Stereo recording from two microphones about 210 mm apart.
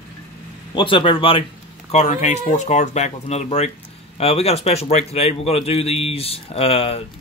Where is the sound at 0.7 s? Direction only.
25° left (ahead or behind).